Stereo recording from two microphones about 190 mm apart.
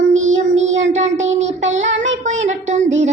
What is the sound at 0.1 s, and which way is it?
Child singing, 40° right (ahead or behind).